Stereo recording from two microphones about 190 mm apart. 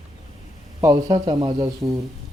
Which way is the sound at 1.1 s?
25° right (ahead or behind).